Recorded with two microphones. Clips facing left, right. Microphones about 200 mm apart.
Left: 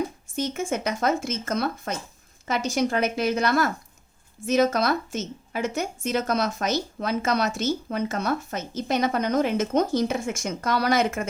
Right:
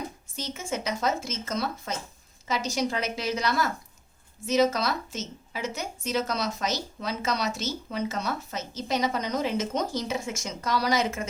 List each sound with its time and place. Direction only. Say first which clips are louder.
0.3 s a woman's voice: left 7 dB; 55° left (ahead or behind)